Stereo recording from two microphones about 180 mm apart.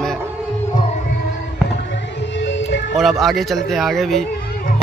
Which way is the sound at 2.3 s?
85° left.